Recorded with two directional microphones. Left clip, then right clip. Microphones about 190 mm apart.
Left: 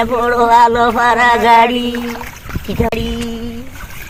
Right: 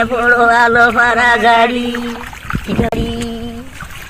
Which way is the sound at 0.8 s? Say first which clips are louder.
Even; 35° left (ahead or behind).